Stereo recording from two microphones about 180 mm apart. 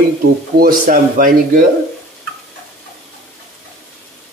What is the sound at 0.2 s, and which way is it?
Speech, 50° right (ahead or behind).